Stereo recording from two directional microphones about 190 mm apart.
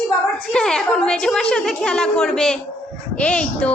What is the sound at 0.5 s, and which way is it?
A woman's voice, 5° left (ahead or behind).